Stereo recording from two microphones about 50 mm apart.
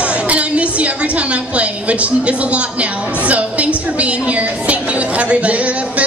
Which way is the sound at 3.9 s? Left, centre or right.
Right.